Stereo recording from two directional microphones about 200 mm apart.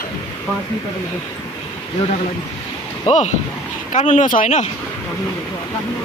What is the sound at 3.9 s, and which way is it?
Speech, 35° left (ahead or behind).